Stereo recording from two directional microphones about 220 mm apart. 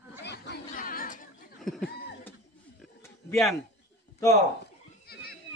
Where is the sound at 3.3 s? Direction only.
Centre (ahead or behind).